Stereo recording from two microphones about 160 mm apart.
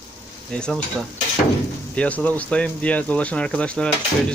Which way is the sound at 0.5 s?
5° left (ahead or behind).